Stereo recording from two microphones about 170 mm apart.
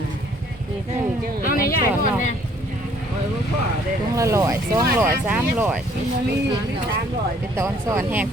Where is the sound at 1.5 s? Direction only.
60° left (ahead or behind).